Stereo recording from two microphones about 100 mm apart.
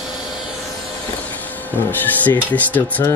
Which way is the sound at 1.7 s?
15° left (ahead or behind).